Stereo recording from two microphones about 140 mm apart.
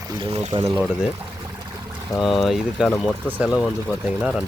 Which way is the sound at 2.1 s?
Centre (ahead or behind).